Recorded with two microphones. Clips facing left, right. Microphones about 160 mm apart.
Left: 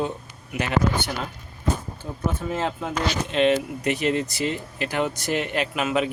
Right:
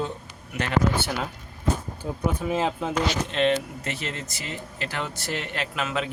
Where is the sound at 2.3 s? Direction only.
10° right (ahead or behind).